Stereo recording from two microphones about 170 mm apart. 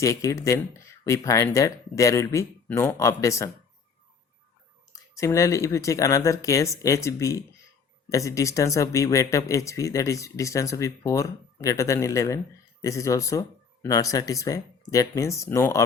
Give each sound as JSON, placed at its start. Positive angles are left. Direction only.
{"t": 0.0, "sound": "speech", "side_deg": 20}
{"t": 4.9, "sound": "speech", "side_deg": 20}